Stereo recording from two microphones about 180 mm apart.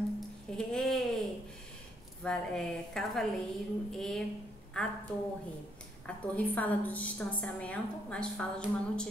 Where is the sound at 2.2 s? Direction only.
5° left (ahead or behind).